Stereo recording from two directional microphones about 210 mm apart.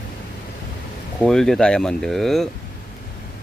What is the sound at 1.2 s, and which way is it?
Speech, 5° left (ahead or behind).